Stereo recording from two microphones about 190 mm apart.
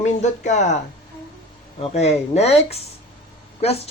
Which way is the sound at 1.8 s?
35° left (ahead or behind).